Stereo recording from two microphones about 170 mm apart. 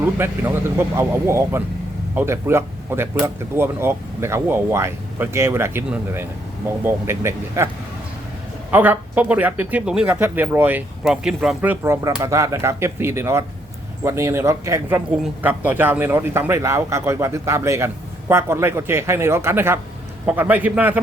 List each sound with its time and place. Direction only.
0.0 s a man's voice: 10° right (ahead or behind)
8.7 s a man's voice: 10° right (ahead or behind)